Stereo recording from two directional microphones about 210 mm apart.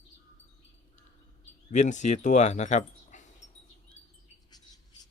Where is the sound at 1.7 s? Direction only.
35° left (ahead or behind).